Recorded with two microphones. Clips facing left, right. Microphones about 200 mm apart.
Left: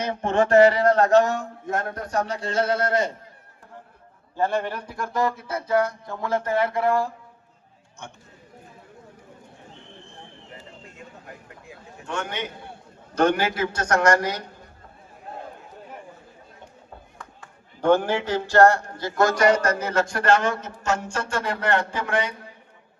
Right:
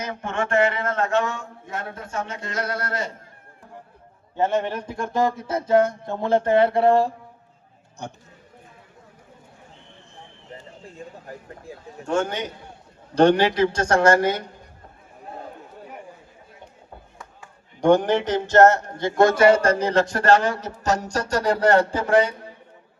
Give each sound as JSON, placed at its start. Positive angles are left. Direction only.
{"t": 0.0, "sound": "speech", "side_deg": 35}
{"t": 4.4, "sound": "speech", "side_deg": -20}
{"t": 10.8, "sound": "a sound", "side_deg": -35}
{"t": 13.1, "sound": "speech", "side_deg": -30}
{"t": 17.2, "sound": "a man's voice", "side_deg": -15}